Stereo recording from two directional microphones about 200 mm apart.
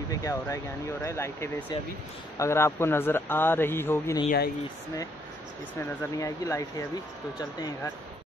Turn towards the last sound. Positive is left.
turn(degrees=20)  # may be behind; listen again after turning